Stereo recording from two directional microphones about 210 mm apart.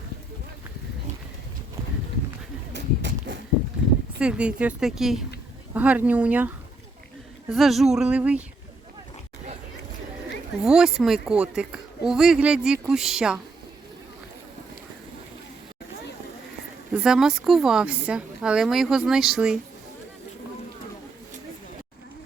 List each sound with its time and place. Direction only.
2.7 s a sound: 60° right (ahead or behind)
4.2 s a woman's voice: 5° right (ahead or behind)
7.5 s a woman's voice: centre (ahead or behind)
10.6 s a woman's voice: 5° right (ahead or behind)
16.9 s a woman's voice: 5° right (ahead or behind)